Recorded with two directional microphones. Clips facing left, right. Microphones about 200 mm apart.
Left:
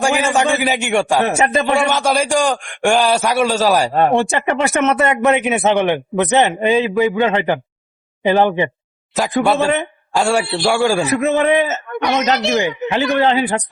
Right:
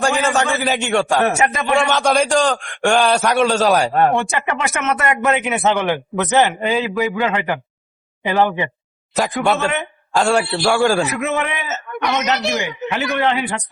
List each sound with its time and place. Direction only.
0.0 s a man's voice: 10° left (ahead or behind)
1.2 s a man's voice: 30° left (ahead or behind)
1.9 s a man's voice: 5° left (ahead or behind)
4.2 s a man's voice: 35° left (ahead or behind)
9.1 s a man's voice: centre (ahead or behind)
9.6 s a man's voice: 35° left (ahead or behind)
10.2 s a man's voice: 10° left (ahead or behind)
11.1 s a man's voice: 35° left (ahead or behind)